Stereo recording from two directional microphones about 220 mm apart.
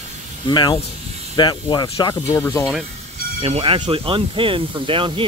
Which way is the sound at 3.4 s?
25° right (ahead or behind).